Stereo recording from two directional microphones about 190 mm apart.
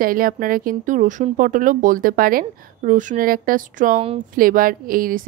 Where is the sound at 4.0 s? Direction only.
30° right (ahead or behind).